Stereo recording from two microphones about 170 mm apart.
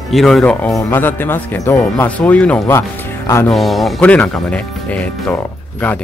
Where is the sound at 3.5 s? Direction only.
Centre (ahead or behind).